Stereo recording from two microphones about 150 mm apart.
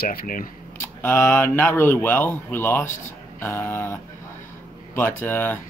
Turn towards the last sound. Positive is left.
turn(degrees=15)  # may be behind; listen again after turning